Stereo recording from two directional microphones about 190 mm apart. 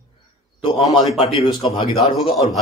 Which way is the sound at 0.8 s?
Centre (ahead or behind).